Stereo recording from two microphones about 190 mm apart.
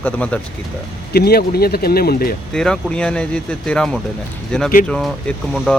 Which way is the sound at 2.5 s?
5° left (ahead or behind).